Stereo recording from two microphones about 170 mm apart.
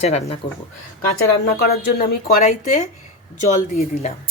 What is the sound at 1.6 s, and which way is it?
Speech, 65° left (ahead or behind).